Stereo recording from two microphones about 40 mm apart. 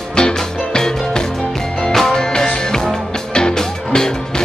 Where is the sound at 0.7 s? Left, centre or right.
Centre.